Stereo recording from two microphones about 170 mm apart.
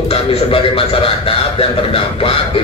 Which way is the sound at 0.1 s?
35° left (ahead or behind).